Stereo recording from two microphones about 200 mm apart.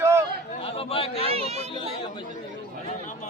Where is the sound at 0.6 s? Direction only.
30° left (ahead or behind).